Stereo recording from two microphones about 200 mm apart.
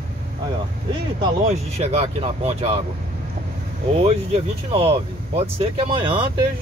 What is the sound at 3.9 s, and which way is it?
Speech, 30° right (ahead or behind).